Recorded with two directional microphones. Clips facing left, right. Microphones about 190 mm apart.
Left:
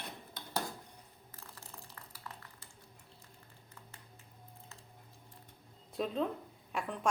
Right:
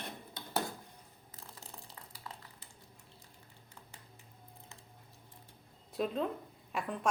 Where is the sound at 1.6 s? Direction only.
15° right (ahead or behind).